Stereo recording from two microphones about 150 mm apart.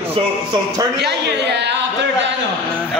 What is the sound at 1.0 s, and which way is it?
Speech, 90° right.